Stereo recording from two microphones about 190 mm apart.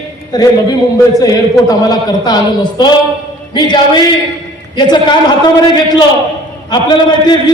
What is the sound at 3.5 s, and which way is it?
A man's voice, 25° left (ahead or behind).